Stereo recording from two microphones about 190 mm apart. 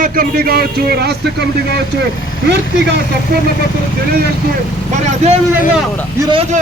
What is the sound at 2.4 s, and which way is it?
Speech, 65° right (ahead or behind).